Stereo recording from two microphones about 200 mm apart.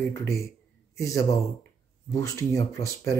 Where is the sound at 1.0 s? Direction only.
15° left (ahead or behind).